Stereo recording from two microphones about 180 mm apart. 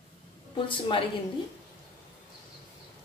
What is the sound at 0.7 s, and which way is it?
Speech, 30° left (ahead or behind).